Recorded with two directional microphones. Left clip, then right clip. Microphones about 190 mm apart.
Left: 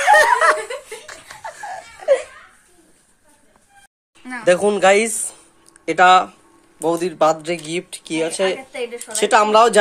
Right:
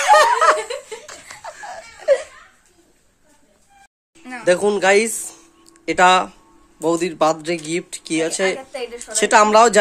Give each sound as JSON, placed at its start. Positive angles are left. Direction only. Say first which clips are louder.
{"t": 0.0, "sound": "laughter", "louder": "even", "side_deg": -15}
{"t": 4.2, "sound": "a sound", "louder": "left 2 dB", "side_deg": -20}
{"t": 4.5, "sound": "speech", "louder": "left 2 dB", "side_deg": -10}
{"t": 5.9, "sound": "speech", "louder": "left 2 dB", "side_deg": -25}